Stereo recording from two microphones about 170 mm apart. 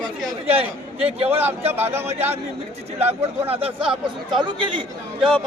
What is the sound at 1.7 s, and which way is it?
Speech, 15° right (ahead or behind).